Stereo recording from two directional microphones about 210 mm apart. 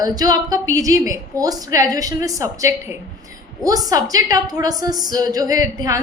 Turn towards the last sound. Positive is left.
turn(degrees=-15)  # may be behind; listen again after turning